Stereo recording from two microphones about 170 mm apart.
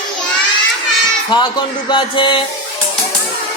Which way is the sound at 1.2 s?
25° left (ahead or behind).